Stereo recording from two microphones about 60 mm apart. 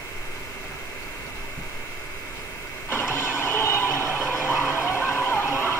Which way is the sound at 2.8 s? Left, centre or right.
Left.